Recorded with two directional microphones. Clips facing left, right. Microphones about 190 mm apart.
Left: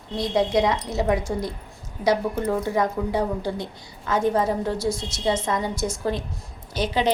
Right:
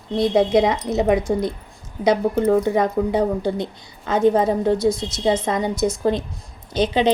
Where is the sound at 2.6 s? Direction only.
20° right (ahead or behind).